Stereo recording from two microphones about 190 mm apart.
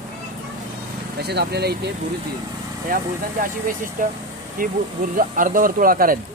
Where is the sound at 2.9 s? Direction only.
45° right (ahead or behind).